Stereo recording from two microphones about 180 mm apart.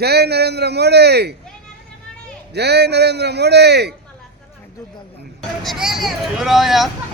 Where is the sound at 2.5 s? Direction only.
70° right (ahead or behind).